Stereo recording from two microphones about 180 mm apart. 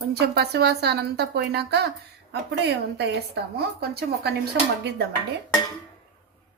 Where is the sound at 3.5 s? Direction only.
60° right (ahead or behind).